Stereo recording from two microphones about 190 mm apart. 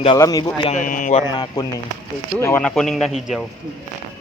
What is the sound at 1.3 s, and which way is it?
A man's voice, 20° left (ahead or behind).